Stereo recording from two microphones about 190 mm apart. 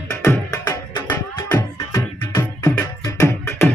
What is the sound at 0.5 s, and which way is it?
Music, 20° left (ahead or behind).